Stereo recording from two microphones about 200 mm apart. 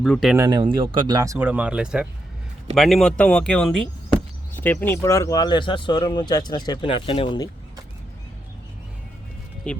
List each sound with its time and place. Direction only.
0.0 s speech: centre (ahead or behind)
0.3 s speech: 20° right (ahead or behind); by 7.5 s 20° left (ahead or behind)
9.7 s speech: 5° left (ahead or behind)